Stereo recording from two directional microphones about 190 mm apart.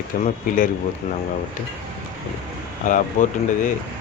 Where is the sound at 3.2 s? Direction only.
40° left (ahead or behind).